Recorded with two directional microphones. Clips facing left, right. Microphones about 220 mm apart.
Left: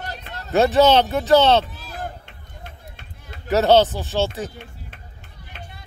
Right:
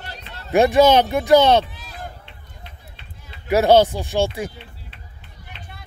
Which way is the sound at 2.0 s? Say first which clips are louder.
Left 4 dB; 45° left (ahead or behind).